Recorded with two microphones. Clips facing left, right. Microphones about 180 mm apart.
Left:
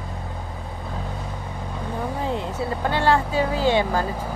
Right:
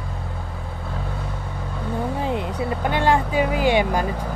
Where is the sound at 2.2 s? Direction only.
20° right (ahead or behind).